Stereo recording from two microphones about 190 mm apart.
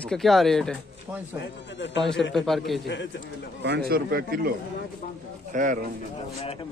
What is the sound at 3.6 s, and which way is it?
Speech, 55° right (ahead or behind).